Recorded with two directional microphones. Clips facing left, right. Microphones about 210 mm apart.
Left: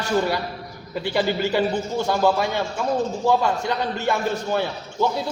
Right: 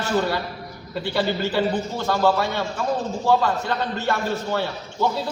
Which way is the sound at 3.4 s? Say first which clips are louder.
Left 1 dB; 15° left (ahead or behind).